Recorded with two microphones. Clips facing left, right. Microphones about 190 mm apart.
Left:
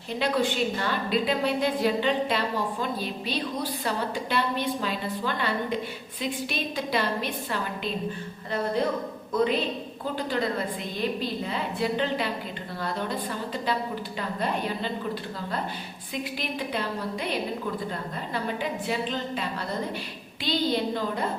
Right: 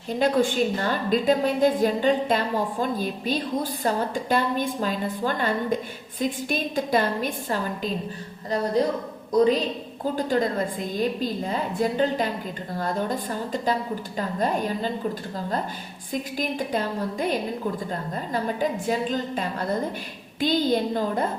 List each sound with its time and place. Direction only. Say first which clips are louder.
0.2 s a woman's voice: right 4 dB; 45° right (ahead or behind)
16.1 s a woman's voice: right 4 dB; 45° right (ahead or behind)